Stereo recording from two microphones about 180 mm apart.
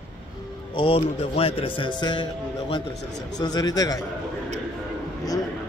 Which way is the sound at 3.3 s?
20° left (ahead or behind).